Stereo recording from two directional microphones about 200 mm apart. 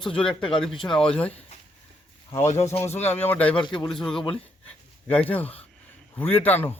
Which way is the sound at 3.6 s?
25° left (ahead or behind).